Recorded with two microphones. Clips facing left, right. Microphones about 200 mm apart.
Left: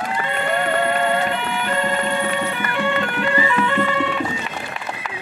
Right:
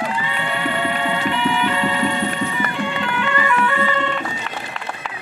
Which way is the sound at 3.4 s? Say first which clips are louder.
Even; 20° left (ahead or behind).